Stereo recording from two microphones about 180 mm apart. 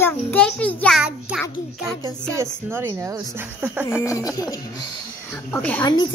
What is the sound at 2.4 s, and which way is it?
Speech, 10° right (ahead or behind).